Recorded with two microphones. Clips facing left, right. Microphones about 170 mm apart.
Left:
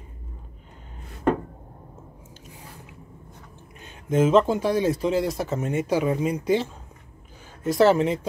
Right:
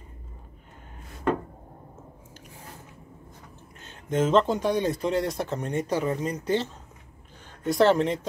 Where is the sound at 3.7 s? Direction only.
10° left (ahead or behind).